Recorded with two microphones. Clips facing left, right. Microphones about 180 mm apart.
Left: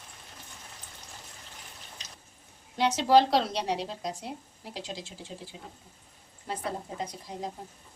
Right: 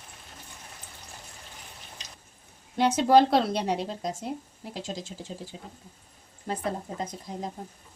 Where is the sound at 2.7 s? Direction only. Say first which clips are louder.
Right 2 dB; 50° right (ahead or behind).